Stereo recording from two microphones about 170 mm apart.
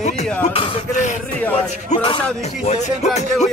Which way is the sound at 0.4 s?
40° left (ahead or behind).